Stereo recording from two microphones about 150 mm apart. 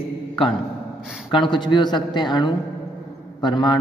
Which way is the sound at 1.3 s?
35° left (ahead or behind).